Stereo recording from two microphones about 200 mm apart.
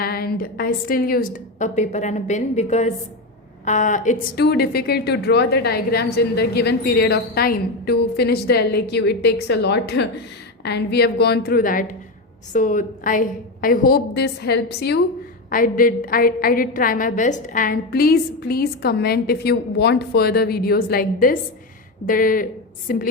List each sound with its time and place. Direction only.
0.0 s a woman's voice: 50° left (ahead or behind)
4.4 s a woman's voice: 55° left (ahead or behind)
15.4 s a woman's voice: 45° left (ahead or behind)